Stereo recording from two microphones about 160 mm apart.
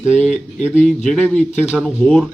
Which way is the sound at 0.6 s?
50° left (ahead or behind).